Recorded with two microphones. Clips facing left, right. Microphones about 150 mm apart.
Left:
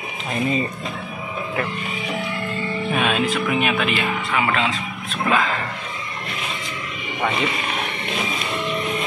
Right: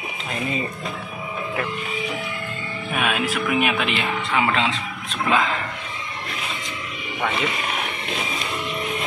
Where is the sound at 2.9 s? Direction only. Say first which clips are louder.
Left 1 dB; 5° right (ahead or behind).